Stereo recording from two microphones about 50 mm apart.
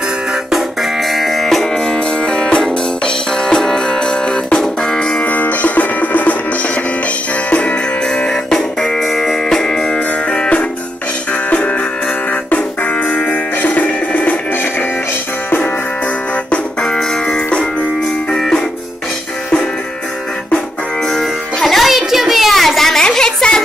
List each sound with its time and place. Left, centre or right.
0.5 s music: centre
5.2 s music: left; by 8.5 s centre
8.5 s music: centre
9.9 s music: left
12.3 s music: left
16.8 s music: centre
21.1 s music: centre
23.0 s a sound: centre